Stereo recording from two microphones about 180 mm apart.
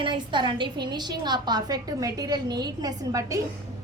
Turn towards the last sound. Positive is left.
turn(degrees=-20)  # may be behind; listen again after turning